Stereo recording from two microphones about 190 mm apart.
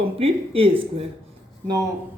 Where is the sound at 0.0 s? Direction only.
30° right (ahead or behind).